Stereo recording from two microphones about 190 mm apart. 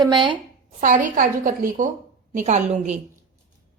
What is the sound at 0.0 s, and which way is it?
Speech, 25° right (ahead or behind).